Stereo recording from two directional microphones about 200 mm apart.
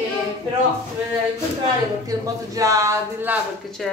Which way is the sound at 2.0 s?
15° right (ahead or behind).